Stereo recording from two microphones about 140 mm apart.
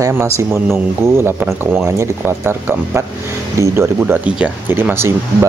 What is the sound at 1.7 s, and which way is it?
Speech, 15° right (ahead or behind).